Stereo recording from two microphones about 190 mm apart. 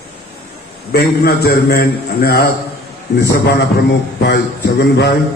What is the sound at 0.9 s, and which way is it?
A man's voice, 55° left (ahead or behind).